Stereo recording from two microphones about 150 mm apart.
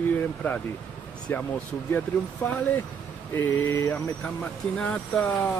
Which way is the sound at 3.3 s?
15° left (ahead or behind).